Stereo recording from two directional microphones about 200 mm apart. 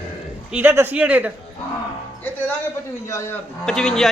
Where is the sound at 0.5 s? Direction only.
10° right (ahead or behind).